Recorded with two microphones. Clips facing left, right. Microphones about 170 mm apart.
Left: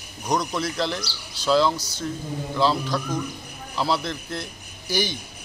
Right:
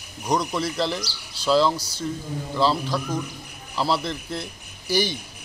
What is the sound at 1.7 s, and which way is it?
Speech, 30° right (ahead or behind).